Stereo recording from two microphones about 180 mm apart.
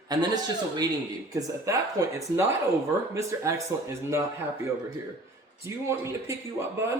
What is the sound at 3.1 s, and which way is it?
Speech, 15° right (ahead or behind).